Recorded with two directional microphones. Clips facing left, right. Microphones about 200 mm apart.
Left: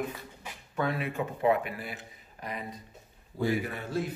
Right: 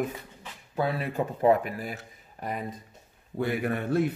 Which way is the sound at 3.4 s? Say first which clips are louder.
Right 2 dB; 60° right (ahead or behind).